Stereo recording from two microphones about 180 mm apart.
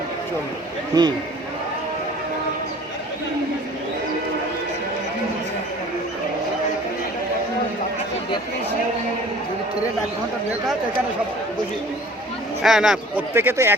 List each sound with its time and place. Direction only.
0.9 s a man's voice: 20° right (ahead or behind)
12.6 s speech: centre (ahead or behind)
13.3 s speech: 15° right (ahead or behind)